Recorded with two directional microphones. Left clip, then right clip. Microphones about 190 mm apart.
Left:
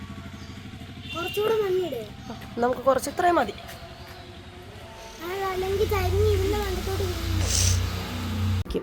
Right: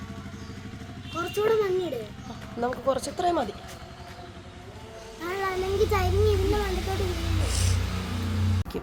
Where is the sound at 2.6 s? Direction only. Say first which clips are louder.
Left 4 dB; 25° left (ahead or behind).